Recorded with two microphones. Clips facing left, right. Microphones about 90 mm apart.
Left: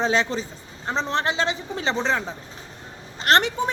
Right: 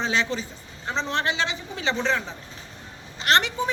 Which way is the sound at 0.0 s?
40° left (ahead or behind).